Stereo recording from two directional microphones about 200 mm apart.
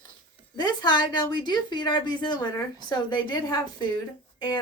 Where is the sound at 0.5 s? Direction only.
20° left (ahead or behind).